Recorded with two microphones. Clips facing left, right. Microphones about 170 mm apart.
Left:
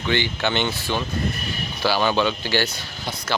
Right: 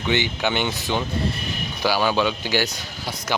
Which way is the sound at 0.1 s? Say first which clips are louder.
Even; 15° right (ahead or behind).